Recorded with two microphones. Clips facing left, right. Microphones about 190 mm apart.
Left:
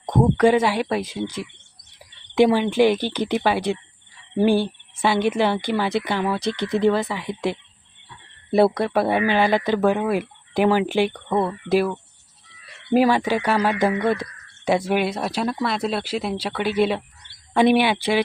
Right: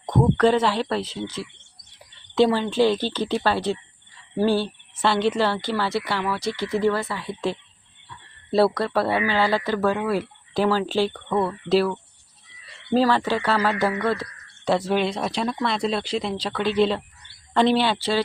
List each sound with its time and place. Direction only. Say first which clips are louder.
0.0 s a woman's voice: left 2 dB; 10° left (ahead or behind)